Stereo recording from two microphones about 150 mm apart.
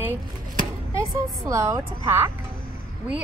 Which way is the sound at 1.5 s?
20° right (ahead or behind).